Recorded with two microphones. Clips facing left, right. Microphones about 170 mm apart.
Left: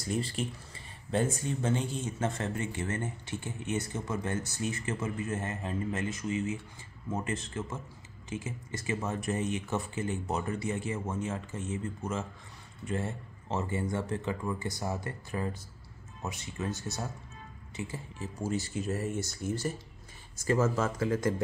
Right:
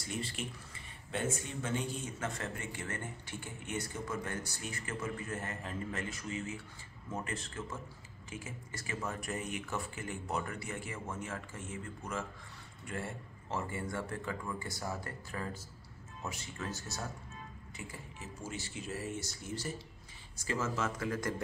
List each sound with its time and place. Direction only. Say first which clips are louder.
0.0 s speech: left 7 dB; 35° left (ahead or behind)